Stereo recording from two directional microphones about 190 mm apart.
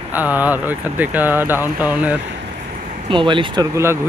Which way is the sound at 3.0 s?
25° right (ahead or behind).